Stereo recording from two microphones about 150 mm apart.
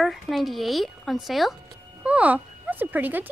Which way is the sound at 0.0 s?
Centre (ahead or behind).